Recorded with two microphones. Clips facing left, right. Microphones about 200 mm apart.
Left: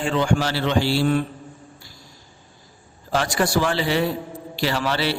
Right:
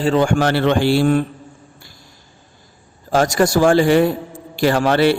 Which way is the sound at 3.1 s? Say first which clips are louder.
Right 6 dB; 45° right (ahead or behind).